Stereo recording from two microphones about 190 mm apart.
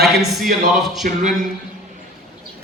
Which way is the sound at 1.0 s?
45° right (ahead or behind).